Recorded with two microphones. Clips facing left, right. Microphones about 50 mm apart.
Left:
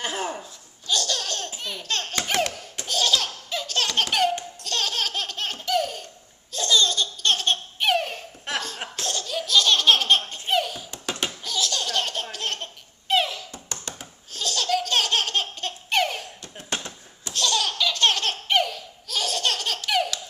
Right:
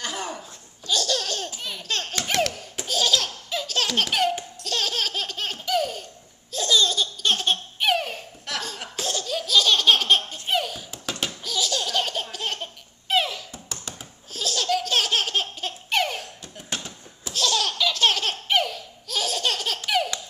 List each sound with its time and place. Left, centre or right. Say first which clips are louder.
0.4 s laughter: even; centre
8.5 s cough: left 2 dB; left
8.9 s laughter: right 2 dB; centre
10.3 s a sound: left 1 dB; centre
11.4 s laughter: right 2 dB; centre